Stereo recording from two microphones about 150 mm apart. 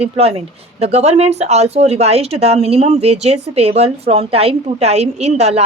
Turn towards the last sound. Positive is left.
turn(degrees=-45)  # may be behind; listen again after turning